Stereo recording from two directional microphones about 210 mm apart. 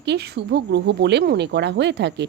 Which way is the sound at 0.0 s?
50° right (ahead or behind).